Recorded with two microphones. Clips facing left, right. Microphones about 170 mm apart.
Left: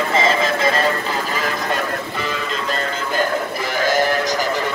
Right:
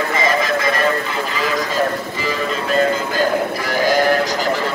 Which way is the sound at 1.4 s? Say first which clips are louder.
Right 3 dB; 60° left (ahead or behind).